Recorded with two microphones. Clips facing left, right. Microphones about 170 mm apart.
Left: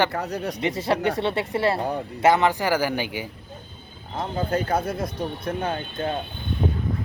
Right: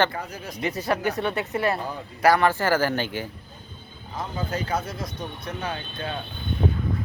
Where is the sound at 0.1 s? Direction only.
70° left (ahead or behind).